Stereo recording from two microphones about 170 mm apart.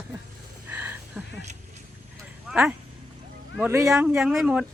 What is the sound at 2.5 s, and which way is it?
Speech, 10° right (ahead or behind).